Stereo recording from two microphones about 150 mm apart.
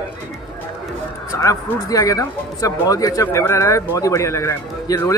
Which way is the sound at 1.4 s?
20° left (ahead or behind).